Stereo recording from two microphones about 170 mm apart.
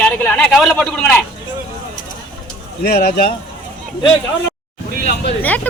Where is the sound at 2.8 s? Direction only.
60° left (ahead or behind).